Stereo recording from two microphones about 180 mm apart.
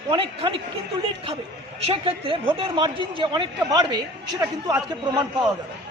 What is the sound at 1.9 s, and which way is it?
A man's voice, 30° right (ahead or behind).